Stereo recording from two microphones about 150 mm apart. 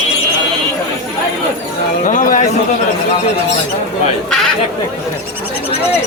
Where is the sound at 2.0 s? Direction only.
55° left (ahead or behind).